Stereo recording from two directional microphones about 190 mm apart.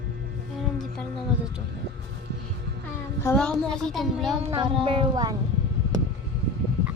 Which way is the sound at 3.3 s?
5° left (ahead or behind).